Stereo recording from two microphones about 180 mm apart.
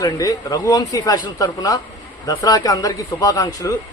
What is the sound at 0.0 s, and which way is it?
A man's voice, 20° left (ahead or behind).